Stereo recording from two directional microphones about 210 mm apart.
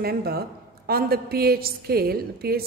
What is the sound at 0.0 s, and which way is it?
A woman's voice, 45° right (ahead or behind).